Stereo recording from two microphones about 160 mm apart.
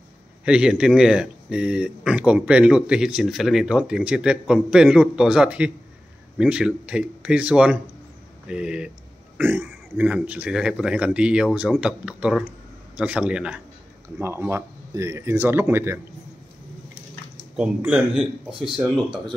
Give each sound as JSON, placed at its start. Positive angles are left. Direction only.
{"t": 0.5, "sound": "speech", "side_deg": -5}
{"t": 17.6, "sound": "speech", "side_deg": -5}
{"t": 19.0, "sound": "speech", "side_deg": -30}